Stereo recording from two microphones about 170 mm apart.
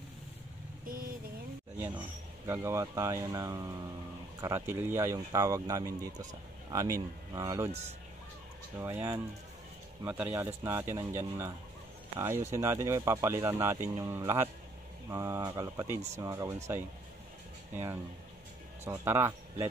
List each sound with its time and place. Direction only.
0.8 s vehicle: 55° right (ahead or behind)
2.4 s speech: 15° right (ahead or behind)
8.7 s speech: 15° right (ahead or behind)
19.0 s speech: 15° right (ahead or behind)